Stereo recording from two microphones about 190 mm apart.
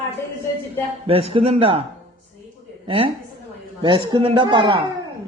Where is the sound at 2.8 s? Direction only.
30° right (ahead or behind).